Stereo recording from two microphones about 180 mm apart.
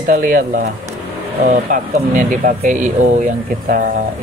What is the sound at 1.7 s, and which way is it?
Speech, 50° right (ahead or behind).